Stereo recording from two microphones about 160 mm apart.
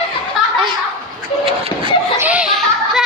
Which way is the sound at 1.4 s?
35° right (ahead or behind).